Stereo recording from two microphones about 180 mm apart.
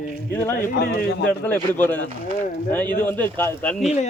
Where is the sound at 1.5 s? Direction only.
10° left (ahead or behind).